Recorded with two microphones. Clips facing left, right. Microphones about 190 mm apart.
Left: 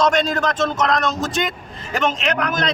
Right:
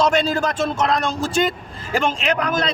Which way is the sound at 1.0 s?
30° right (ahead or behind).